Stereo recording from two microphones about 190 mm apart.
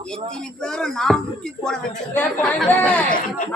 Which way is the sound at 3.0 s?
45° left (ahead or behind).